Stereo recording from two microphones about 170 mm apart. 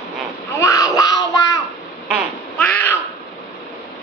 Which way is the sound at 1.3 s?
20° left (ahead or behind).